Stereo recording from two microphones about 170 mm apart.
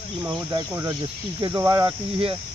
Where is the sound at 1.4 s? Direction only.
20° right (ahead or behind).